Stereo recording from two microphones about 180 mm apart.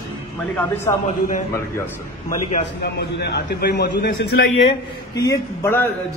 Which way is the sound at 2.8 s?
65° left (ahead or behind).